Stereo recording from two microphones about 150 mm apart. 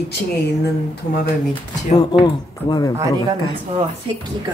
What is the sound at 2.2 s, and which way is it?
Speech, 25° left (ahead or behind).